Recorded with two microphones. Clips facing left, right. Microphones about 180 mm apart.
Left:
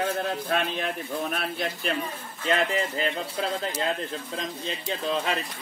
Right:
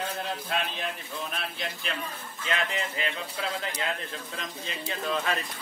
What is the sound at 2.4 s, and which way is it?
Speech, 35° left (ahead or behind).